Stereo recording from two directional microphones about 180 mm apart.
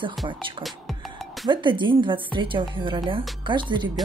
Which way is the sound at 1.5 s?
25° right (ahead or behind).